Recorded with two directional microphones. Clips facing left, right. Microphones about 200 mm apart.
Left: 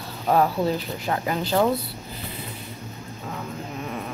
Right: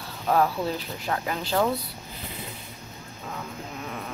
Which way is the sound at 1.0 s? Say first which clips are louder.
Left 3 dB; 10° left (ahead or behind).